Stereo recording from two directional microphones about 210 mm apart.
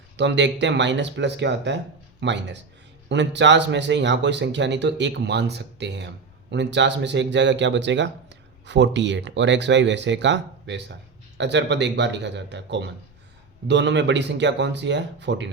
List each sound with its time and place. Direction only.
0.2 s speech: 55° right (ahead or behind)